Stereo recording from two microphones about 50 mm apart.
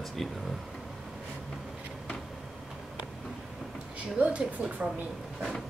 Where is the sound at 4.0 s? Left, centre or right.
Right.